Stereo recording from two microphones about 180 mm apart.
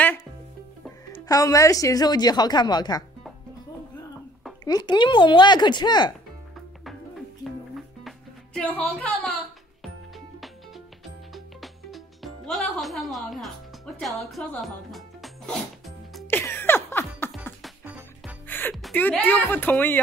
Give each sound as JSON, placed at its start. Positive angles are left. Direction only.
{"t": 1.1, "sound": "a woman's voice", "side_deg": 20}
{"t": 4.6, "sound": "a woman's voice", "side_deg": 25}
{"t": 8.5, "sound": "speech", "side_deg": 10}
{"t": 11.3, "sound": "music", "side_deg": 0}
{"t": 13.9, "sound": "speech", "side_deg": 0}
{"t": 16.3, "sound": "music", "side_deg": 10}
{"t": 17.6, "sound": "music", "side_deg": -5}
{"t": 18.9, "sound": "speech", "side_deg": 10}